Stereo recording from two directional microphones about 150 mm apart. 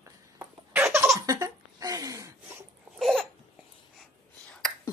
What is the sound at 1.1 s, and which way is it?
Laughter, 25° right (ahead or behind).